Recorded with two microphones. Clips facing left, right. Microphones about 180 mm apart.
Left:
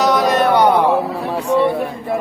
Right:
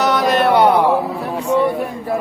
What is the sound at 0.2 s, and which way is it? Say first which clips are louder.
Music: even; centre (ahead or behind).